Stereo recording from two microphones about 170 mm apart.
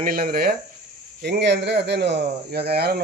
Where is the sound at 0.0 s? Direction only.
60° right (ahead or behind).